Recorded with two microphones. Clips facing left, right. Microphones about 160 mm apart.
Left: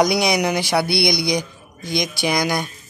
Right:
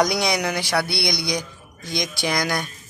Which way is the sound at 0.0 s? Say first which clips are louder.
Left 4 dB; 10° left (ahead or behind).